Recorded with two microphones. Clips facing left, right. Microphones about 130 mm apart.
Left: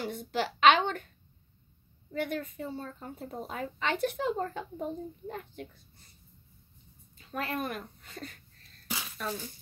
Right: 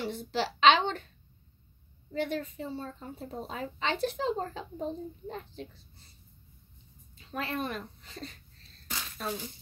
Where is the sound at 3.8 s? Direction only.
55° left (ahead or behind).